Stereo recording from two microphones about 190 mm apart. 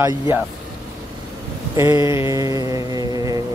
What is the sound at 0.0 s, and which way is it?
Speech, 15° right (ahead or behind).